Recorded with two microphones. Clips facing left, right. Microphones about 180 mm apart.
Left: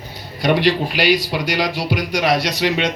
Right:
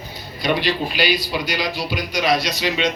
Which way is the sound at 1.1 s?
85° left.